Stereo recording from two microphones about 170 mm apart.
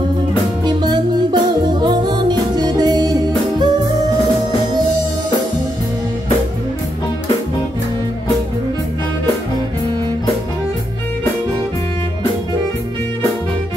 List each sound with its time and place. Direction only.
0.7 s music: 25° right (ahead or behind)